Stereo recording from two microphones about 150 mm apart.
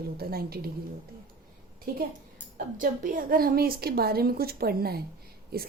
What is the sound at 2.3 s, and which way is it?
A woman's voice, 65° right (ahead or behind).